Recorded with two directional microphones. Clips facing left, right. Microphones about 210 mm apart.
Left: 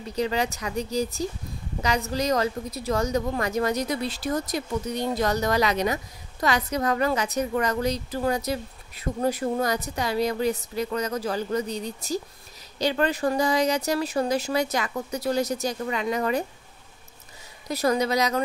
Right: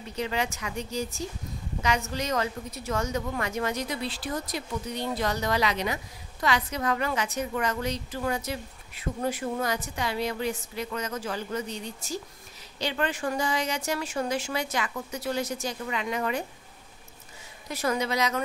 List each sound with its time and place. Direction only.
0.1 s a woman's voice: 35° left (ahead or behind)
17.6 s a woman's voice: 35° left (ahead or behind)